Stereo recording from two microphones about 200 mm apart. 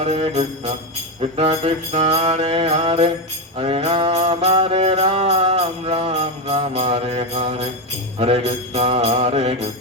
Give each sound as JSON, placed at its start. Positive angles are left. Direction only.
{"t": 0.0, "sound": "mantra", "side_deg": -30}
{"t": 1.2, "sound": "music", "side_deg": -30}
{"t": 8.2, "sound": "mantra", "side_deg": -30}